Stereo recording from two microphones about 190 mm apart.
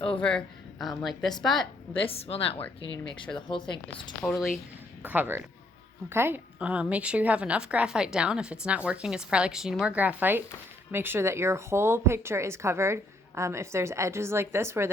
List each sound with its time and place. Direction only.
0.2 s a woman's voice: 5° left (ahead or behind)
1.9 s a woman's voice: 30° left (ahead or behind)
4.4 s a woman's voice: centre (ahead or behind)